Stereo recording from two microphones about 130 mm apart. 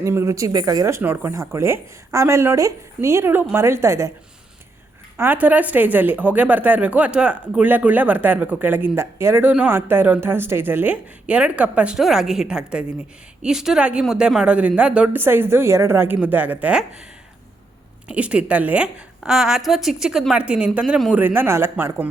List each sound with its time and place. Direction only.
0.0 s speech: 20° right (ahead or behind)
5.1 s a woman's voice: 15° right (ahead or behind)
18.1 s a woman's voice: 10° right (ahead or behind)